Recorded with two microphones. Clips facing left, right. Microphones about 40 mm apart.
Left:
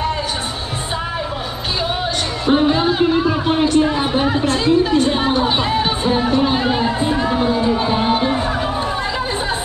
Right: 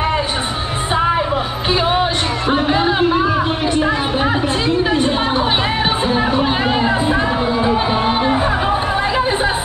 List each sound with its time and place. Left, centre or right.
2.0 s music: right
3.6 s a sound: right
6.2 s music: right